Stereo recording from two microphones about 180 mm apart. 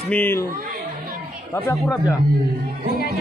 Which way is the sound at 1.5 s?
15° left (ahead or behind).